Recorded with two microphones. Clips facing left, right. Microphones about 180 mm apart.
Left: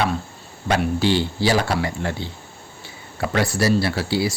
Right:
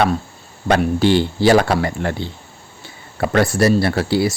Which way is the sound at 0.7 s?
55° right (ahead or behind).